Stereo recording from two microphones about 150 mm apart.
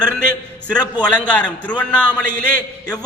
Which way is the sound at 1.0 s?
10° left (ahead or behind).